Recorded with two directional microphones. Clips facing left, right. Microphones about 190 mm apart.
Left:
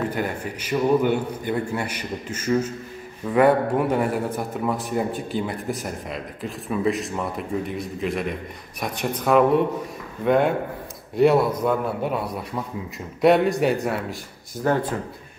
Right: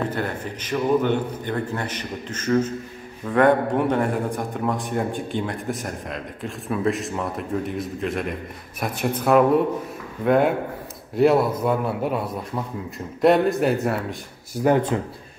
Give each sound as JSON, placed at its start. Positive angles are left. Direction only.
{"t": 0.1, "sound": "a man's voice", "side_deg": 10}
{"t": 14.6, "sound": "speech", "side_deg": -20}